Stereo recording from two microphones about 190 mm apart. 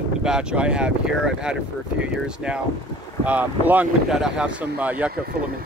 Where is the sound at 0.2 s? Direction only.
5° right (ahead or behind).